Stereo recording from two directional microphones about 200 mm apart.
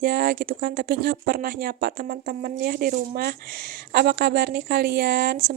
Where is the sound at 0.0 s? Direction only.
50° right (ahead or behind).